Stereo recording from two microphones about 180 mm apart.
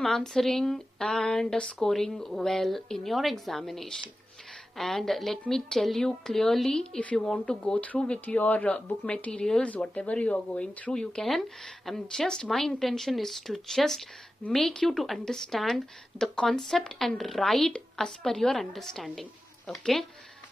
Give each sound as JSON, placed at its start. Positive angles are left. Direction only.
{"t": 0.0, "sound": "a woman's voice", "side_deg": 0}